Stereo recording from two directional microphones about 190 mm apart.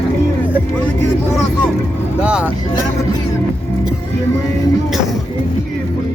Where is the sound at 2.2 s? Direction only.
5° right (ahead or behind).